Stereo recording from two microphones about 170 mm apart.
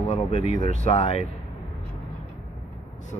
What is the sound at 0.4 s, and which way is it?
Speech, 50° right (ahead or behind).